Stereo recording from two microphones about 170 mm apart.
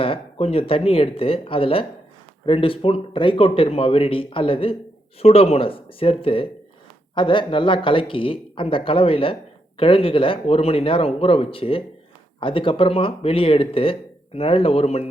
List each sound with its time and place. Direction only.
0.0 s speech: 35° left (ahead or behind)